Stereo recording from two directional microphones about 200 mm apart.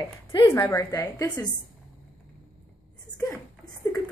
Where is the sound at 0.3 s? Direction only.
15° left (ahead or behind).